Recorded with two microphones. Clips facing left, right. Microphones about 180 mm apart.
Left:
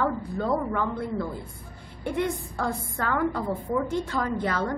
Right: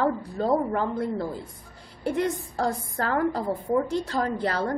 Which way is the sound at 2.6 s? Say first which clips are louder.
Right 4 dB; 35° right (ahead or behind).